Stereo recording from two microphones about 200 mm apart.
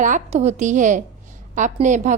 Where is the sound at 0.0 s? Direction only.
35° right (ahead or behind).